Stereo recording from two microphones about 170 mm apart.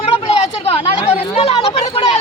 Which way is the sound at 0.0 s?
40° left (ahead or behind).